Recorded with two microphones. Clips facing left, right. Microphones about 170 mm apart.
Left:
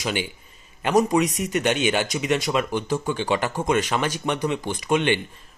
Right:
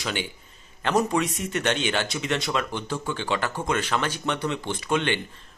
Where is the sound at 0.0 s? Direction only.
15° left (ahead or behind).